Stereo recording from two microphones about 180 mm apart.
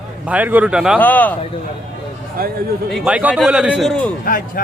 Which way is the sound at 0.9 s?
10° left (ahead or behind).